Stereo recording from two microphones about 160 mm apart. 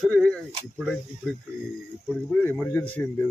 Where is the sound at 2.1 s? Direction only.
10° left (ahead or behind).